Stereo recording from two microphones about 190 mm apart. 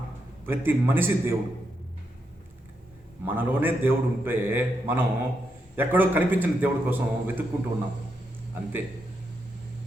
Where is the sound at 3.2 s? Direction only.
10° right (ahead or behind).